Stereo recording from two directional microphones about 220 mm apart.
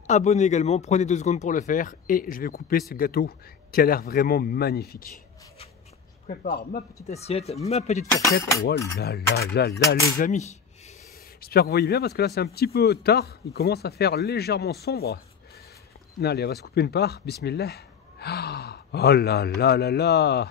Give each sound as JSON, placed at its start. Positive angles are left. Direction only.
{"t": 0.0, "sound": "speech", "side_deg": 30}
{"t": 6.4, "sound": "speech", "side_deg": 45}
{"t": 7.1, "sound": "speech", "side_deg": 30}
{"t": 8.2, "sound": "speech", "side_deg": 15}
{"t": 8.9, "sound": "speech", "side_deg": 45}
{"t": 10.1, "sound": "speech", "side_deg": 35}
{"t": 11.4, "sound": "speech", "side_deg": 45}
{"t": 16.2, "sound": "speech", "side_deg": 45}